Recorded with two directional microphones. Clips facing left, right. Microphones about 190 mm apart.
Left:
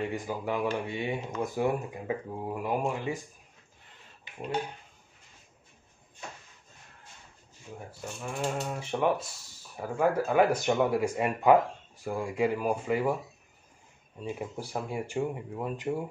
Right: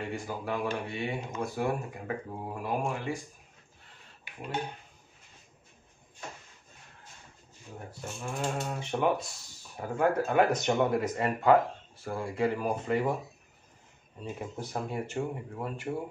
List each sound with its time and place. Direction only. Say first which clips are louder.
0.1 s speech: left 2 dB; 15° left (ahead or behind)
8.2 s speech: left 1 dB; 5° left (ahead or behind)
14.2 s speech: left 2 dB; 10° left (ahead or behind)